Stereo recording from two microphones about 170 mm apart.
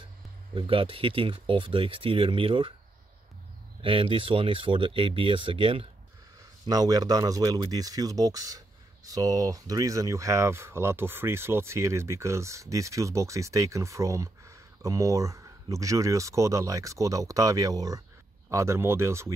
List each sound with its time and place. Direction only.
0.6 s speech: 30° right (ahead or behind)
3.8 s speech: 30° right (ahead or behind); by 19.3 s 15° right (ahead or behind)